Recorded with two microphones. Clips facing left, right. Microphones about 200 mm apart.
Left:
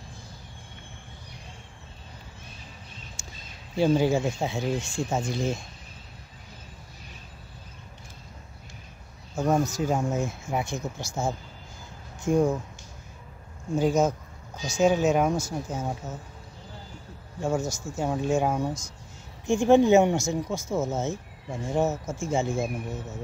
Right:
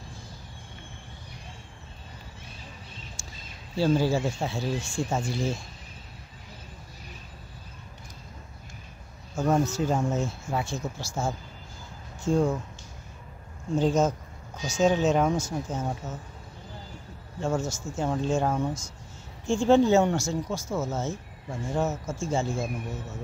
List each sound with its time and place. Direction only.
3.2 s a sound: 20° left (ahead or behind)
3.7 s speech: 20° left (ahead or behind)
9.3 s speech: 15° left (ahead or behind)
13.7 s speech: 10° left (ahead or behind)
17.4 s speech: 15° left (ahead or behind)